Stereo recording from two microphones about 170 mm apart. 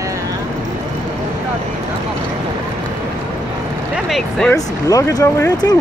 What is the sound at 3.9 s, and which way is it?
Speech, centre (ahead or behind).